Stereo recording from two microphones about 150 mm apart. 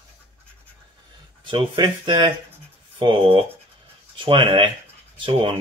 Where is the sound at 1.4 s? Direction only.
30° right (ahead or behind).